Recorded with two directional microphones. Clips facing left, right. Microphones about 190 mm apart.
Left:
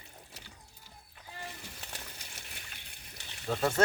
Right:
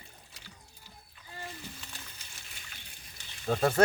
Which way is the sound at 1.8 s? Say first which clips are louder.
Left 3 dB; 65° left (ahead or behind).